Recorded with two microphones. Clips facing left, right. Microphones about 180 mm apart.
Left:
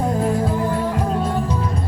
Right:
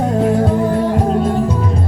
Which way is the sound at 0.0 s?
75° right (ahead or behind).